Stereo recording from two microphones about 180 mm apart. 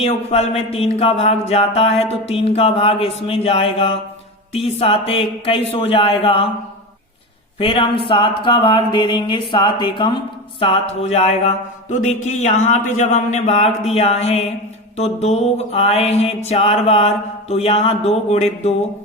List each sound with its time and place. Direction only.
0.0 s mantra: 35° left (ahead or behind)
7.6 s speech: 30° left (ahead or behind)
11.1 s mantra: 35° left (ahead or behind)